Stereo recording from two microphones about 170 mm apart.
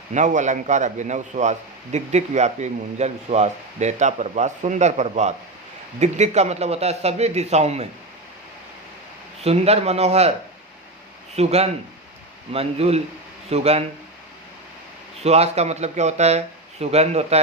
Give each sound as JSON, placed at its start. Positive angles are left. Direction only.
{"t": 0.1, "sound": "a man's voice", "side_deg": -45}
{"t": 9.4, "sound": "a man's voice", "side_deg": -40}
{"t": 11.3, "sound": "a man's voice", "side_deg": -40}
{"t": 15.2, "sound": "a man's voice", "side_deg": -40}